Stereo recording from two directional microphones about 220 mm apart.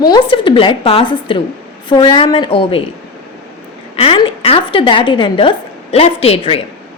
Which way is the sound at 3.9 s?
25° left (ahead or behind).